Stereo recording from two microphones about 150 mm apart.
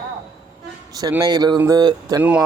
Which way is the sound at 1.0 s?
25° right (ahead or behind).